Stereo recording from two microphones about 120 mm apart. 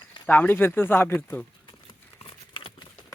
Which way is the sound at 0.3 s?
15° left (ahead or behind).